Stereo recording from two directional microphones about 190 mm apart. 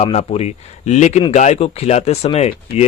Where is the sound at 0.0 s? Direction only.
30° left (ahead or behind).